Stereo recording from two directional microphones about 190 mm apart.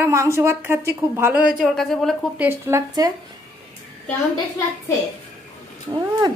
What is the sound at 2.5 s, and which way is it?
Speech, 15° right (ahead or behind).